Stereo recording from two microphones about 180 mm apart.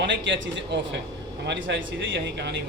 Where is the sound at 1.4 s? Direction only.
80° right.